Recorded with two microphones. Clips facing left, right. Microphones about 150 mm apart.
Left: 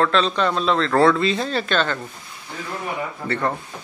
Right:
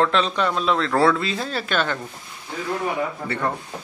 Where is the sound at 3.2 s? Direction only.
10° right (ahead or behind).